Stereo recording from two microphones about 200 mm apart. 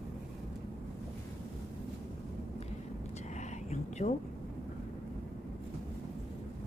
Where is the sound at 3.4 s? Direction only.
35° left (ahead or behind).